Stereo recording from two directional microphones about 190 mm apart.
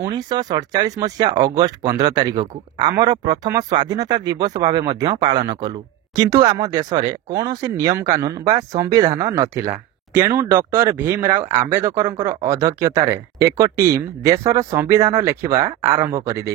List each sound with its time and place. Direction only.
0.0 s speech: 20° right (ahead or behind)